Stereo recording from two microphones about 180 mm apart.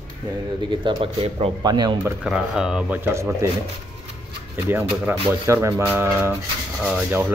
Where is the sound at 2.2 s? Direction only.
5° right (ahead or behind).